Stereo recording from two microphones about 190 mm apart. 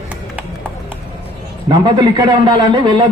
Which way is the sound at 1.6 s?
25° right (ahead or behind).